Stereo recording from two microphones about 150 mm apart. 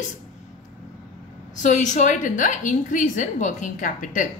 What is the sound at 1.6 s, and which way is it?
A woman's voice, 55° left (ahead or behind).